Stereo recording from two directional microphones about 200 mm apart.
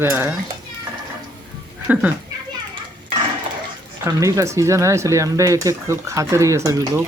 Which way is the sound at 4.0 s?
15° right (ahead or behind).